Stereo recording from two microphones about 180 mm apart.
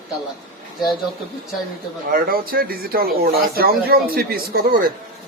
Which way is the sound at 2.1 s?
55° right (ahead or behind).